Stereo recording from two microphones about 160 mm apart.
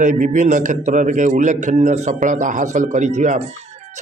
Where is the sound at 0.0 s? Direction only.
50° right (ahead or behind).